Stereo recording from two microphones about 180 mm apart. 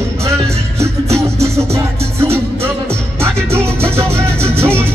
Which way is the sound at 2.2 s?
15° right (ahead or behind).